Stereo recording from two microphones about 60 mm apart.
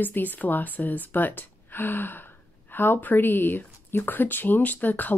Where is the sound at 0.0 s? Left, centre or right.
Left.